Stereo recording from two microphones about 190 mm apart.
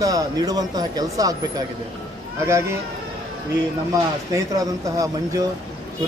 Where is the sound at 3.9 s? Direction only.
20° right (ahead or behind).